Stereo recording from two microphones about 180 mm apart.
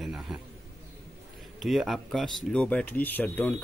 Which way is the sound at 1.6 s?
Centre (ahead or behind).